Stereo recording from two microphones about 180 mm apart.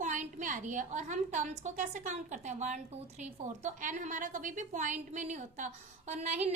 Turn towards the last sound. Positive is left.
turn(degrees=-40)  # may be behind; listen again after turning